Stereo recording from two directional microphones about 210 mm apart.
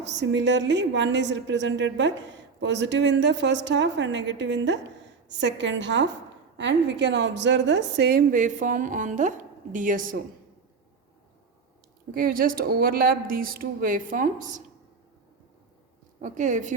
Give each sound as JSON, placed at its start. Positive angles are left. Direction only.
{"t": 0.0, "sound": "a woman's voice", "side_deg": -55}
{"t": 12.1, "sound": "speech", "side_deg": -45}
{"t": 16.2, "sound": "a woman's voice", "side_deg": -35}